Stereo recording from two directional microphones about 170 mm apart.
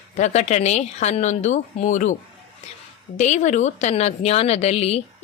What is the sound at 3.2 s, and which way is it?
A woman's voice, 45° left (ahead or behind).